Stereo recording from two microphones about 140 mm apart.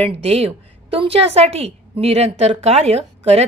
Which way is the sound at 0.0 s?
45° right (ahead or behind).